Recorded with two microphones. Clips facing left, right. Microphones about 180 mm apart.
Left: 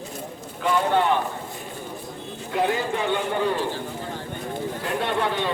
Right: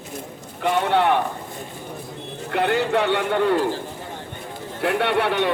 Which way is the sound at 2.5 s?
70° right (ahead or behind).